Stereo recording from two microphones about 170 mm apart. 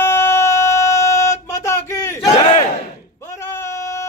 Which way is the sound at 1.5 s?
15° left (ahead or behind).